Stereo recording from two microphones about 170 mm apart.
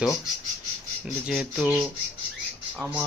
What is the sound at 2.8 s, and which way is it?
Speech, 5° right (ahead or behind).